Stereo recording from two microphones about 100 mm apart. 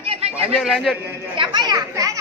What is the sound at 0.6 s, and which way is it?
Sheep, centre (ahead or behind).